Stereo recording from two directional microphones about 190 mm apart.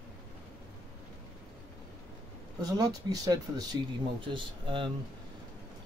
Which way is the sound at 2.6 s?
20° right (ahead or behind).